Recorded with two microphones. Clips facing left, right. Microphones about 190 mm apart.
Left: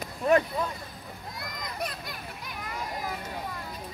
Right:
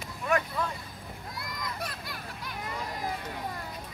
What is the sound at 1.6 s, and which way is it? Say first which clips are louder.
Children playing: left 4 dB; 15° left (ahead or behind).